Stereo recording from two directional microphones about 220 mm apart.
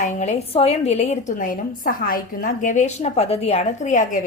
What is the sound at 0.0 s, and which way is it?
A woman's voice, 30° left (ahead or behind).